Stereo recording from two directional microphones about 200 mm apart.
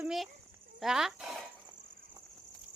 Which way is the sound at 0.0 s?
Centre (ahead or behind).